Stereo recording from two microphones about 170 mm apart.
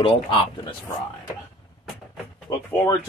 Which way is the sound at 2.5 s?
15° left (ahead or behind).